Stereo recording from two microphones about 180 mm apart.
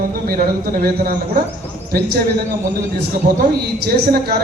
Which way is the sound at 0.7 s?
50° right (ahead or behind).